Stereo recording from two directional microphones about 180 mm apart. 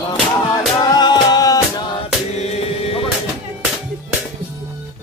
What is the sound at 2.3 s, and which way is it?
Music, 35° left (ahead or behind).